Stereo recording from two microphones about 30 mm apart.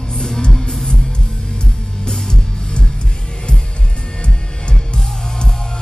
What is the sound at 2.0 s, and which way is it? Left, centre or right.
Music, left.